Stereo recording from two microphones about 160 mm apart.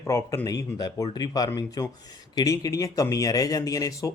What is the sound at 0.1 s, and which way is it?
A man's voice, 15° left (ahead or behind).